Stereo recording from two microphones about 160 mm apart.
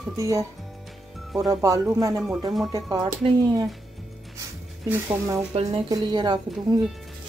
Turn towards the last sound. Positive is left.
turn(degrees=-25)  # may be behind; listen again after turning